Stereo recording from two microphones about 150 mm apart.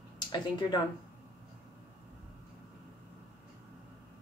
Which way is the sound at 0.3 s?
30° left (ahead or behind).